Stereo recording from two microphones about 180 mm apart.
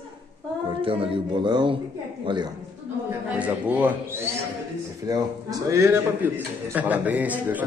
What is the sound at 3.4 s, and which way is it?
Speech, 10° right (ahead or behind).